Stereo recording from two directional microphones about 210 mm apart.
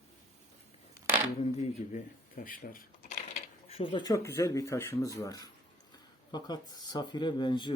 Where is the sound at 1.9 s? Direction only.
40° left (ahead or behind).